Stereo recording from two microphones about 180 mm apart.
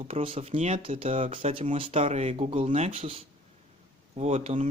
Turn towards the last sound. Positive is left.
turn(degrees=-35)  # may be behind; listen again after turning